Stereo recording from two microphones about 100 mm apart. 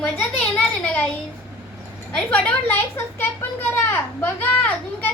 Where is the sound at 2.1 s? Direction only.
10° left (ahead or behind).